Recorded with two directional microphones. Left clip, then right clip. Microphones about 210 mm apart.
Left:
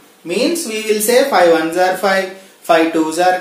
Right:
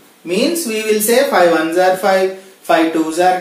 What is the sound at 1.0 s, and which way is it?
Speech, 30° left (ahead or behind).